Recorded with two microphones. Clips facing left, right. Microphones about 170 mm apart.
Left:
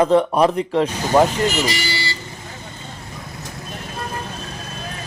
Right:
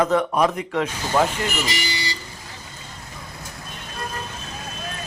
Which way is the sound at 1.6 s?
20° right (ahead or behind).